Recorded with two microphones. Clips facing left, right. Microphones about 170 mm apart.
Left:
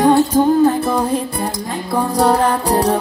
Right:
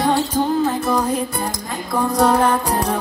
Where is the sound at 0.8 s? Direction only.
35° left (ahead or behind).